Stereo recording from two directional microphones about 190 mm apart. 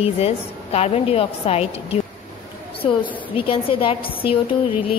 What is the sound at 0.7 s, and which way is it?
A woman's voice, 35° left (ahead or behind).